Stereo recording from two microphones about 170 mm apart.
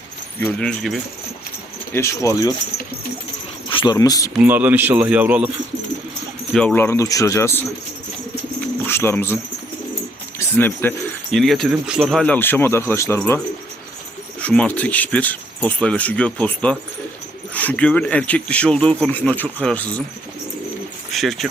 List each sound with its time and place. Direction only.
0.3 s speech: 10° left (ahead or behind)
1.9 s speech: 15° left (ahead or behind)
3.7 s a sound: 30° left (ahead or behind)
3.9 s speech: 20° left (ahead or behind)
4.4 s speech: 10° right (ahead or behind)
6.5 s speech: 5° left (ahead or behind)
8.9 s speech: 15° left (ahead or behind)
21.1 s speech: centre (ahead or behind)